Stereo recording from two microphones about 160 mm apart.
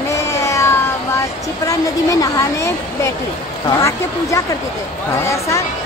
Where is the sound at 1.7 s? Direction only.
20° left (ahead or behind).